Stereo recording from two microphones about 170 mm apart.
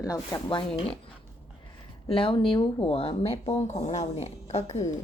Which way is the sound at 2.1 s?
30° left (ahead or behind).